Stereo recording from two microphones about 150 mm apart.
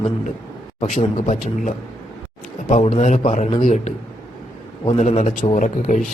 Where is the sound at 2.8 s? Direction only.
50° left (ahead or behind).